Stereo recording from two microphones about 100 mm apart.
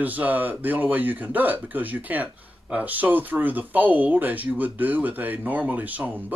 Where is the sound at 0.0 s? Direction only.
15° right (ahead or behind).